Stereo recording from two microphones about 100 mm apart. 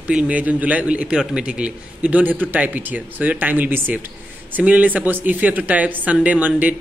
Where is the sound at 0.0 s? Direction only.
10° right (ahead or behind).